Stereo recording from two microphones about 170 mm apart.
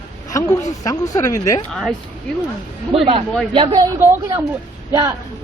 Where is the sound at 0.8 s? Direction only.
20° left (ahead or behind).